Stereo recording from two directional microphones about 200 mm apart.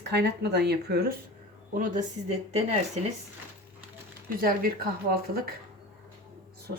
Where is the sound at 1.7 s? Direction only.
40° right (ahead or behind).